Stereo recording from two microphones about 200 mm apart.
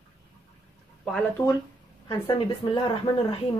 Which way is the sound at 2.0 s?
20° left (ahead or behind).